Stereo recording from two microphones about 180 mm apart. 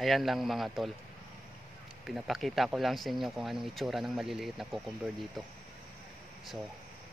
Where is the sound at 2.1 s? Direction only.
Centre (ahead or behind).